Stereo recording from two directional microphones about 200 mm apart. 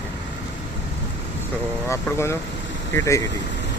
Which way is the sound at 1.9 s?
15° left (ahead or behind).